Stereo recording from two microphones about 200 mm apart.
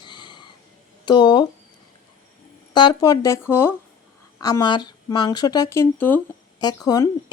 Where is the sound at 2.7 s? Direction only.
20° left (ahead or behind).